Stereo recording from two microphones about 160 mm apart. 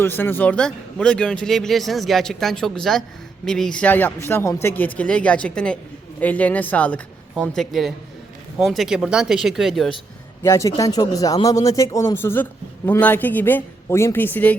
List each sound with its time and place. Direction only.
0.0 s a man's voice: 15° left (ahead or behind)
10.4 s a man's voice: 20° left (ahead or behind)